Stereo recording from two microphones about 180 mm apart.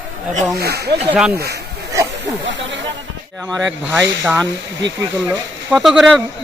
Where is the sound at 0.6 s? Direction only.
65° right (ahead or behind).